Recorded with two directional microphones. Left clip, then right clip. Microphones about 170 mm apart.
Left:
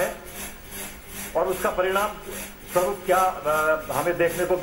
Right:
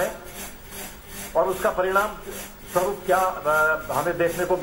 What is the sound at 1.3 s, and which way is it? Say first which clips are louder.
Speech: right 2 dB; 20° left (ahead or behind).